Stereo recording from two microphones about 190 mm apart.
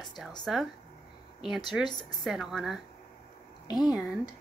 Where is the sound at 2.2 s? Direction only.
Centre (ahead or behind).